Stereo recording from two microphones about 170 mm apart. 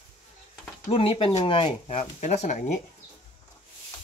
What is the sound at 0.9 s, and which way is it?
Speech, 35° left (ahead or behind).